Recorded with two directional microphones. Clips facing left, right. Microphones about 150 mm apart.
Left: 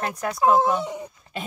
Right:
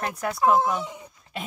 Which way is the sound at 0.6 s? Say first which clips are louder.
Left 3 dB; 25° left (ahead or behind).